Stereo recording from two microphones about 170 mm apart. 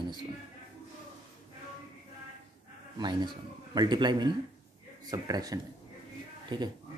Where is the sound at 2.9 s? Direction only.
25° right (ahead or behind).